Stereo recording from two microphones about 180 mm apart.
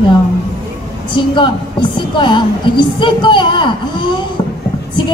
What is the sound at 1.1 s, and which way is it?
A woman's voice, 25° left (ahead or behind).